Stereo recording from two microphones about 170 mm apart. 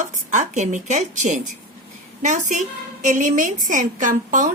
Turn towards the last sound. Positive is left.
turn(degrees=-50)  # may be behind; listen again after turning